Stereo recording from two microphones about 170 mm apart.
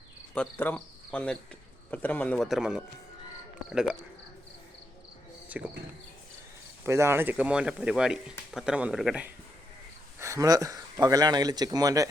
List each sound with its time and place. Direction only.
0.3 s a man's voice: 10° left (ahead or behind)
5.5 s speech: 10° right (ahead or behind)
6.8 s speech: 15° right (ahead or behind)
10.2 s speech: 20° right (ahead or behind)